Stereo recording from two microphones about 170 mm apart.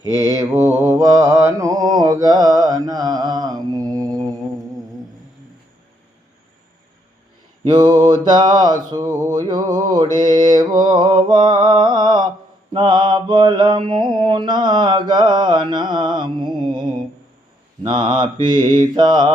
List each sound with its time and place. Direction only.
0.2 s mantra: 20° right (ahead or behind)
7.7 s mantra: 25° right (ahead or behind)
8.9 s a sound: 25° right (ahead or behind)
10.2 s mantra: 25° right (ahead or behind)